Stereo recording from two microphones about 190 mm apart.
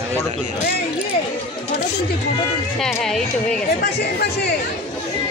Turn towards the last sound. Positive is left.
turn(degrees=0)  # may be behind; listen again after turning